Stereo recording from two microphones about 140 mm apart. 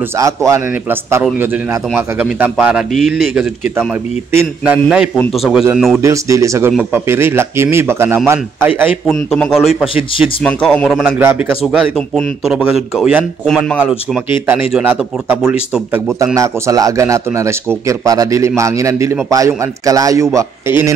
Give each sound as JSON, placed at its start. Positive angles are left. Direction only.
{"t": 0.2, "sound": "speech", "side_deg": -20}
{"t": 5.9, "sound": "speech", "side_deg": -20}
{"t": 9.0, "sound": "speech", "side_deg": 0}
{"t": 11.1, "sound": "speech", "side_deg": -15}
{"t": 11.6, "sound": "speech", "side_deg": -5}
{"t": 16.3, "sound": "speech", "side_deg": -25}